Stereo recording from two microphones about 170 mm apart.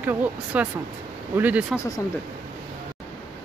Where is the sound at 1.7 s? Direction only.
20° left (ahead or behind).